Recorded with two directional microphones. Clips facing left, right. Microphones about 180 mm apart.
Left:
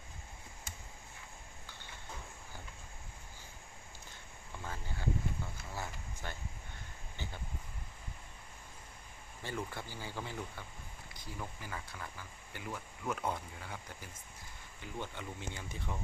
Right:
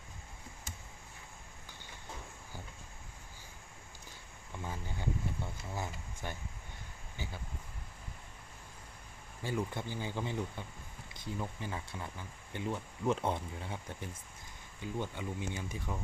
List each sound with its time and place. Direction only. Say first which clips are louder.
4.6 s speech: right 1 dB; 15° right (ahead or behind)
9.4 s speech: right 5 dB; 15° right (ahead or behind)
14.8 s speech: right 5 dB; 15° right (ahead or behind)